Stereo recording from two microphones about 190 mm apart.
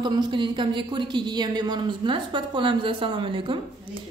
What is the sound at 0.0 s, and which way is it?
A woman's voice, 25° right (ahead or behind).